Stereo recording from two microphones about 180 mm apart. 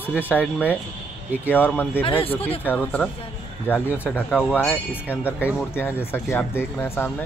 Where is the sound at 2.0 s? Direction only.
30° left (ahead or behind).